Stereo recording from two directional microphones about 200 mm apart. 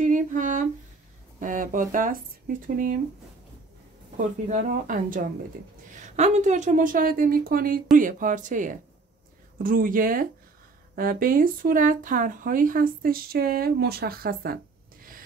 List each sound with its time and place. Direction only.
0.0 s a sound: 40° right (ahead or behind)
1.4 s a woman's voice: 40° right (ahead or behind)
4.2 s a woman's voice: 40° right (ahead or behind)